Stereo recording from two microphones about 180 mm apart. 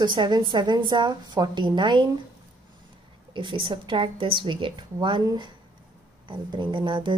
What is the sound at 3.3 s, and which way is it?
A woman's voice, 30° right (ahead or behind).